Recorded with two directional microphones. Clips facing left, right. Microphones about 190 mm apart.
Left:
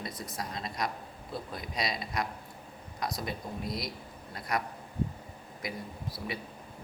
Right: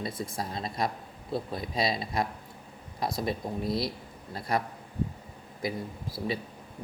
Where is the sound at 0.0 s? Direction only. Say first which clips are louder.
Right 5 dB; 25° right (ahead or behind).